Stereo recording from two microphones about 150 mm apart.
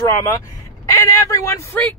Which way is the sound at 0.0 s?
20° left (ahead or behind).